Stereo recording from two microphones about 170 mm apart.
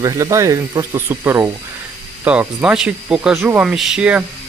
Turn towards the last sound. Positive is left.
turn(degrees=-5)  # may be behind; listen again after turning